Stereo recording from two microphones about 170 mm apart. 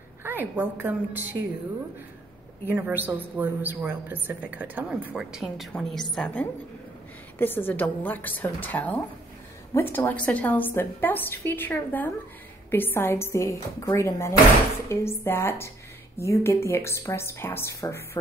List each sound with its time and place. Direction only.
0.2 s a woman's voice: 10° right (ahead or behind)
2.7 s a woman's voice: 10° right (ahead or behind); by 18.0 s 15° left (ahead or behind)